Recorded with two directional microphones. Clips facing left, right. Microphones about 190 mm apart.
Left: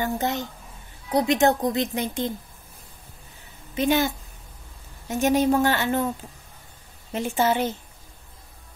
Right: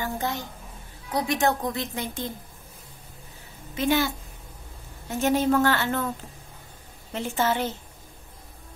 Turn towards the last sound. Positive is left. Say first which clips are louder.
# left 3 dB
turn(degrees=15)  # may be behind; listen again after turning